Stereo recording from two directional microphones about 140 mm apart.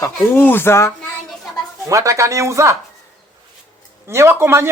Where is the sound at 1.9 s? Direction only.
25° right (ahead or behind).